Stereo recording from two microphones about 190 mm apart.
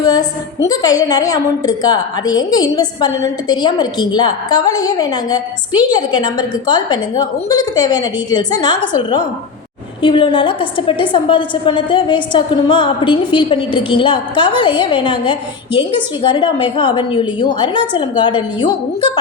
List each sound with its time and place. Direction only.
0.0 s a woman's voice: 20° left (ahead or behind)